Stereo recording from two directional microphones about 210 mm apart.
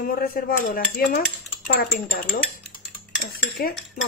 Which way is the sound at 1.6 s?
45° left (ahead or behind).